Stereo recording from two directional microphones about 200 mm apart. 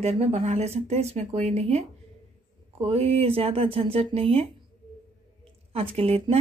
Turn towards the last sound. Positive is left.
turn(degrees=-30)  # may be behind; listen again after turning